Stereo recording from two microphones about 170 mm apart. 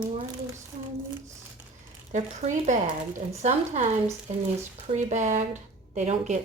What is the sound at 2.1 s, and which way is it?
A woman's voice, 45° right (ahead or behind).